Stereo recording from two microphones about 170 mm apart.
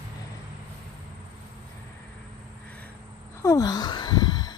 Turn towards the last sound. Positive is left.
turn(degrees=25)  # may be behind; listen again after turning